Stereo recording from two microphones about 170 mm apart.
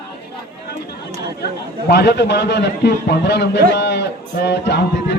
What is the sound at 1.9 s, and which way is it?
A man's voice, 75° left (ahead or behind).